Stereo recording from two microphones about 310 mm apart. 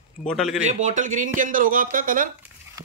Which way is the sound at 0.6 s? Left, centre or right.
Right.